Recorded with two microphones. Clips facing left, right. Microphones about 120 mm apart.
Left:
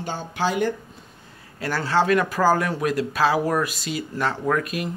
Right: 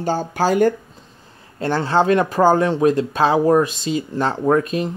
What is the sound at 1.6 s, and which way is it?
Speech, 25° right (ahead or behind).